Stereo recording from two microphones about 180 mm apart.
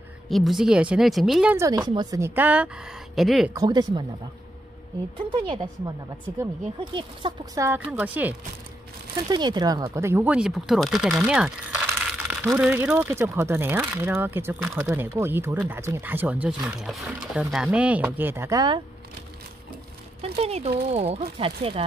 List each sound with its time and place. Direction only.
0.3 s speech: centre (ahead or behind)
1.6 s speech: 20° right (ahead or behind); by 3.5 s centre (ahead or behind)
3.5 s speech: 25° right (ahead or behind)
5.3 s speech: 25° right (ahead or behind)
7.6 s speech: 10° right (ahead or behind)
9.3 s speech: 25° right (ahead or behind)
20.2 s speech: 35° right (ahead or behind)